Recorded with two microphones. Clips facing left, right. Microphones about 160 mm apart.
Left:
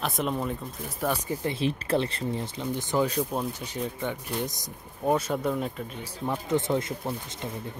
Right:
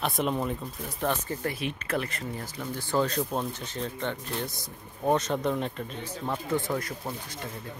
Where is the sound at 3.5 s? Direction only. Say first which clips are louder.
Left 2 dB; 10° left (ahead or behind).